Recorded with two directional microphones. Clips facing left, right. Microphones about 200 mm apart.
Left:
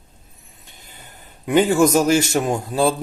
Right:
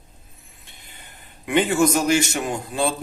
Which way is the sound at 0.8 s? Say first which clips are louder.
Left 4 dB; 40° left (ahead or behind).